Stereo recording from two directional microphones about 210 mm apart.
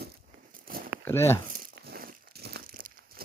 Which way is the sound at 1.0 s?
10° left (ahead or behind).